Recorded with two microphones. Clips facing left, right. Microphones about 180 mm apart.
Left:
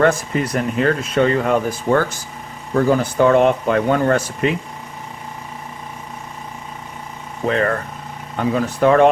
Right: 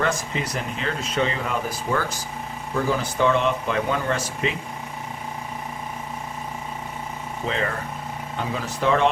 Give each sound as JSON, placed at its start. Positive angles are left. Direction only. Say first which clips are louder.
{"t": 0.0, "sound": "speech", "louder": "left 8 dB", "side_deg": 55}
{"t": 7.4, "sound": "speech", "louder": "left 8 dB", "side_deg": 55}